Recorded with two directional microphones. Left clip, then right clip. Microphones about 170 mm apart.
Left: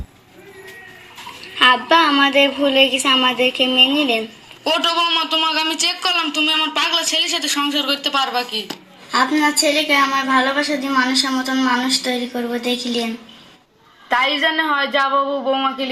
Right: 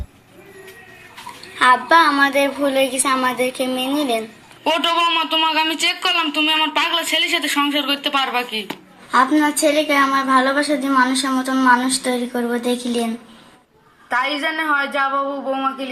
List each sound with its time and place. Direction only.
1.5 s a sound: 30° left (ahead or behind)
3.8 s a man's voice: centre (ahead or behind)
9.1 s a woman's voice: 10° right (ahead or behind)
14.1 s a woman's voice: 45° left (ahead or behind)